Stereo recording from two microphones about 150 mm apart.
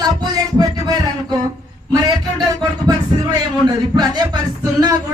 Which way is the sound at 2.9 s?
25° right (ahead or behind).